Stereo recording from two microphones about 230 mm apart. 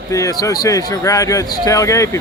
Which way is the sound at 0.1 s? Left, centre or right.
Centre.